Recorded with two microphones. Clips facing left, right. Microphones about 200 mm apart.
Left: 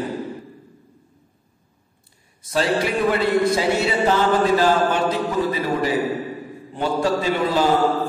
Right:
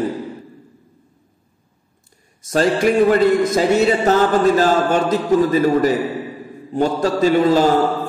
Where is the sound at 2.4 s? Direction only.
45° right (ahead or behind).